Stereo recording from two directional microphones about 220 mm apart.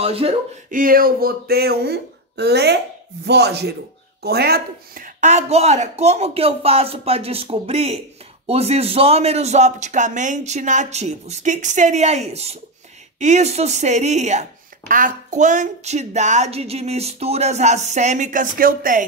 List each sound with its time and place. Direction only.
0.0 s speech: 25° right (ahead or behind)
0.7 s speech: 40° right (ahead or behind)